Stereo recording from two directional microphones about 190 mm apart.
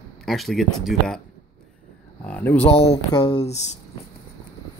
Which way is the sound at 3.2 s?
30° left (ahead or behind).